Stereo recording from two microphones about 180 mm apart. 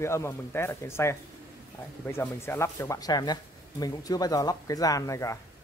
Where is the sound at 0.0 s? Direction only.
15° left (ahead or behind).